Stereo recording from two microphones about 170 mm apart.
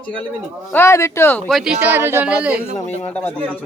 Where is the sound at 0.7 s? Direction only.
15° left (ahead or behind).